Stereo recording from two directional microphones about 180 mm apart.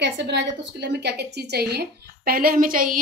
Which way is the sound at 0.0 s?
75° right (ahead or behind).